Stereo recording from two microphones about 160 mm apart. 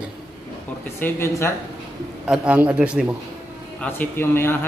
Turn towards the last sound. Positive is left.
turn(degrees=15)  # may be behind; listen again after turning